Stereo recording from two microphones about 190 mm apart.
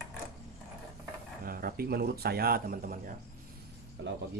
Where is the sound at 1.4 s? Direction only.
50° right (ahead or behind).